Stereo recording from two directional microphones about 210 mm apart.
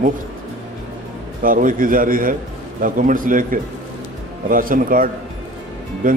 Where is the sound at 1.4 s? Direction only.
40° right (ahead or behind).